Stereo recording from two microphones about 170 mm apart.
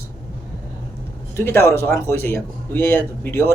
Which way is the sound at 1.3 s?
15° left (ahead or behind).